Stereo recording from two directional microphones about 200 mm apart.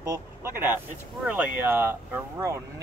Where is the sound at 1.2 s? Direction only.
5° right (ahead or behind).